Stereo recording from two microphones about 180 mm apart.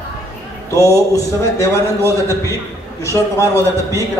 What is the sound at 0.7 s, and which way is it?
A man's voice, 15° left (ahead or behind).